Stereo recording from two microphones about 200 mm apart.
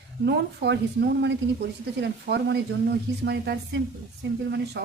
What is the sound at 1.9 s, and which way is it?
A woman's voice, 60° right (ahead or behind).